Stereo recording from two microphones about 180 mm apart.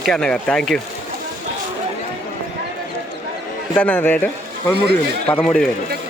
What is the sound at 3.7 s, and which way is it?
Speech, 10° left (ahead or behind).